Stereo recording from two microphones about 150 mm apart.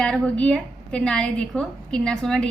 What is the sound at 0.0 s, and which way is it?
A woman's voice, 5° left (ahead or behind).